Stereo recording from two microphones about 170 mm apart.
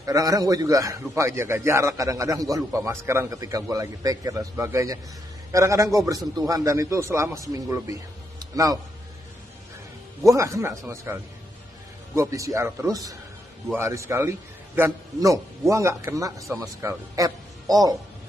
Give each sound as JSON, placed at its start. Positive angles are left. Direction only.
{"t": 0.0, "sound": "a man's voice", "side_deg": -20}
{"t": 10.2, "sound": "a man's voice", "side_deg": -20}